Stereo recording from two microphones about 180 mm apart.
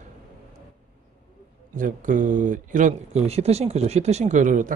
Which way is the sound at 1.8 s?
45° right (ahead or behind).